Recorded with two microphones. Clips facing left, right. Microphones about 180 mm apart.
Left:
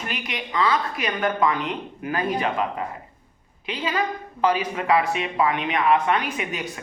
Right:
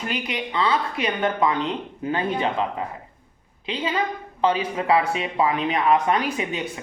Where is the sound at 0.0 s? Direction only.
30° right (ahead or behind).